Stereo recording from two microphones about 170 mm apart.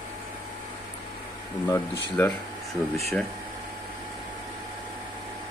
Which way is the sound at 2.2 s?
10° left (ahead or behind).